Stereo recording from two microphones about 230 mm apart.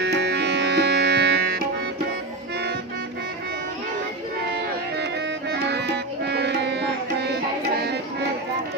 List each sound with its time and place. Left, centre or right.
0.0 s music: right
5.5 s music: right